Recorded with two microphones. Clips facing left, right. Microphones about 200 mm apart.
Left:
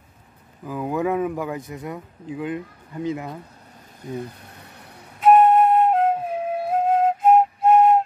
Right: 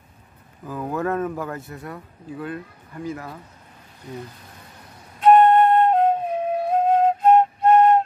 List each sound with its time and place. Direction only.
0.7 s speech: 10° left (ahead or behind)
5.2 s flute: 5° left (ahead or behind)